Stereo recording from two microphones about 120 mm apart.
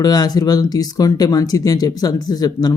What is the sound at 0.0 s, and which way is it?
Speech, 35° left (ahead or behind).